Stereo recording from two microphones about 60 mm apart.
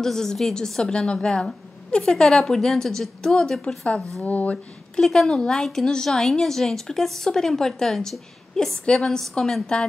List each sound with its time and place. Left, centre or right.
0.0 s a woman's voice: centre; by 4.6 s left
5.0 s a woman's voice: centre